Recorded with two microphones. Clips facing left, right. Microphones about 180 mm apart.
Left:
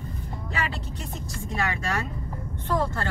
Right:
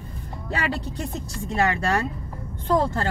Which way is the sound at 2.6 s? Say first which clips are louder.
Right 5 dB; 35° right (ahead or behind).